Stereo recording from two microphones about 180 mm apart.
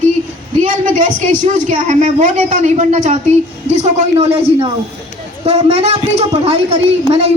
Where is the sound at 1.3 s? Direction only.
45° right (ahead or behind).